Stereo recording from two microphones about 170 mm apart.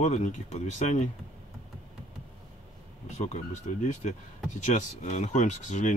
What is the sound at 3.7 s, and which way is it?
Speech, 40° left (ahead or behind).